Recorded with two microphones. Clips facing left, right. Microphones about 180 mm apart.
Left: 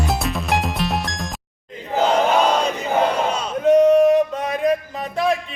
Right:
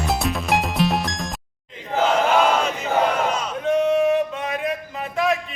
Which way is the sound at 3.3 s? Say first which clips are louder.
Left 5 dB; 35° left (ahead or behind).